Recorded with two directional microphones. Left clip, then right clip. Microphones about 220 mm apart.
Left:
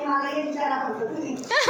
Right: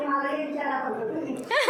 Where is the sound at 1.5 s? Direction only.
15° left (ahead or behind).